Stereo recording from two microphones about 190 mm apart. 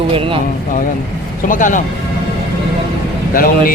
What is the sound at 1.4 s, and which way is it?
Speech, 45° left (ahead or behind).